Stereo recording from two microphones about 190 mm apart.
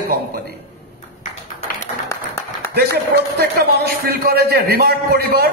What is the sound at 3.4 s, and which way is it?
A man's voice, 55° right (ahead or behind).